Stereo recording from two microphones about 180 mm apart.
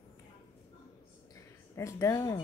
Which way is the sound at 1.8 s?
15° left (ahead or behind).